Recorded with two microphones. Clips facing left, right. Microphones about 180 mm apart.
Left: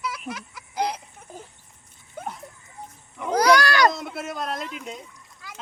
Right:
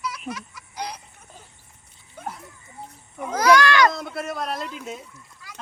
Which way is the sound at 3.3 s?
35° left (ahead or behind).